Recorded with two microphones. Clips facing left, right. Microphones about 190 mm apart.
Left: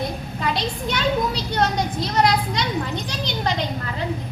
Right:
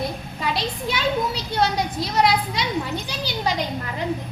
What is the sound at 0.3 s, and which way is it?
A child's voice, centre (ahead or behind).